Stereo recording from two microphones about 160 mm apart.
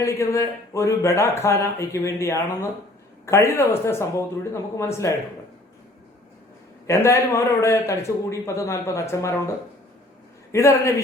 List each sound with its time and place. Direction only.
0.0 s speech: 15° left (ahead or behind)
6.8 s speech: 15° left (ahead or behind)
10.5 s speech: 20° left (ahead or behind)